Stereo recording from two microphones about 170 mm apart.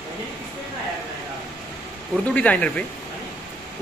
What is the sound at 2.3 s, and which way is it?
Speech, 10° left (ahead or behind).